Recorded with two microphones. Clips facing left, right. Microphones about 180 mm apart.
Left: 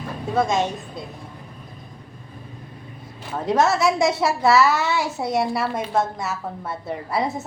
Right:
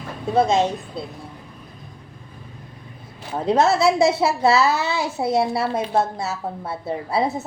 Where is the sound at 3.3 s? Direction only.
25° right (ahead or behind).